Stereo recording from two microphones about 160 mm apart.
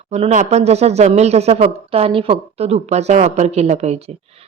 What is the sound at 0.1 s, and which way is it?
A woman's voice, 45° right (ahead or behind).